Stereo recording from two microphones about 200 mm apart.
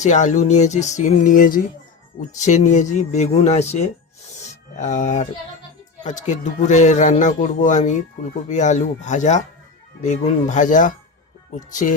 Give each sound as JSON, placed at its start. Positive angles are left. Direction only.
{"t": 0.0, "sound": "speech", "side_deg": 35}